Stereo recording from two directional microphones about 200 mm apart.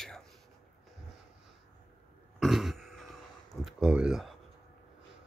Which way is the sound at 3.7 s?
5° right (ahead or behind).